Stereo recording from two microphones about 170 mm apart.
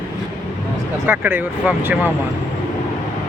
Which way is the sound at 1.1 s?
10° right (ahead or behind).